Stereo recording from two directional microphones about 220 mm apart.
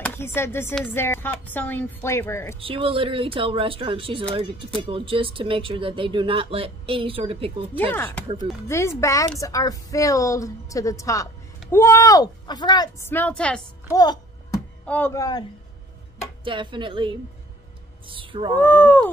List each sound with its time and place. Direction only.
0.0 s a woman's voice: 10° left (ahead or behind)
2.6 s speech: 25° right (ahead or behind)
7.9 s a woman's voice: 10° left (ahead or behind)
13.1 s a woman's voice: 5° left (ahead or behind)
13.9 s music: 15° left (ahead or behind)
14.9 s a woman's voice: 10° left (ahead or behind)
16.4 s speech: 20° right (ahead or behind)
18.6 s a woman's voice: 10° left (ahead or behind)